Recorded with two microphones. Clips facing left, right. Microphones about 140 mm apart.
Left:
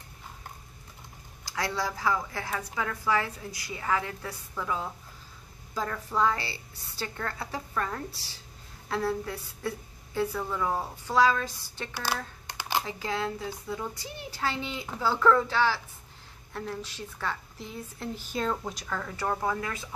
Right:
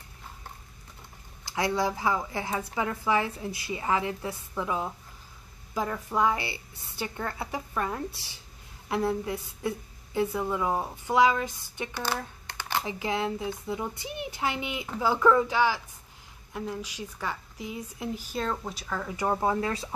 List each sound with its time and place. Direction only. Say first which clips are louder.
1.5 s a woman's voice: right 4 dB; 20° right (ahead or behind)
11.9 s speech: even; 10° left (ahead or behind)
12.4 s a sound: left 2 dB; 10° left (ahead or behind)
12.8 s a woman's voice: right 2 dB; 20° right (ahead or behind)
18.4 s speech: left 2 dB; centre (ahead or behind)
19.1 s speech: right 4 dB; 20° right (ahead or behind)